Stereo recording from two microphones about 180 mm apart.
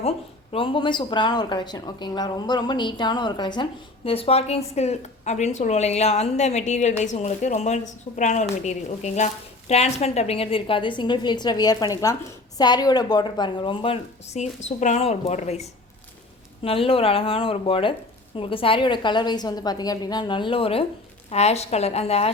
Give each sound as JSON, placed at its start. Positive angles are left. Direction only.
{"t": 0.5, "sound": "a woman's voice", "side_deg": 30}